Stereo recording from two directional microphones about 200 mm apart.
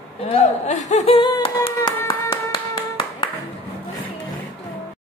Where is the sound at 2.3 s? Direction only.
20° left (ahead or behind).